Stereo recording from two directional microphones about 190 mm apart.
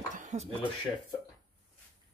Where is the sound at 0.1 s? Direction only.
40° right (ahead or behind).